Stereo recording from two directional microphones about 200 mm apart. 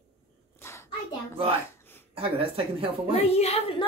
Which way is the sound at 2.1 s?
25° right (ahead or behind).